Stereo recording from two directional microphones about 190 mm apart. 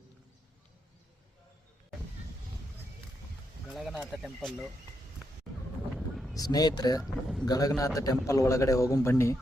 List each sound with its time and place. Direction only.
3.7 s a sound: centre (ahead or behind)
4.4 s speech: 5° left (ahead or behind)
6.3 s speech: 20° left (ahead or behind)
7.0 s speech: 5° left (ahead or behind)
7.4 s a man's voice: 20° left (ahead or behind)